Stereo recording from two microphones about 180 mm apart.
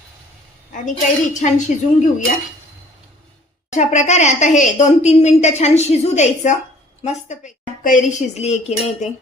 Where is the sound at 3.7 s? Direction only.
40° left (ahead or behind).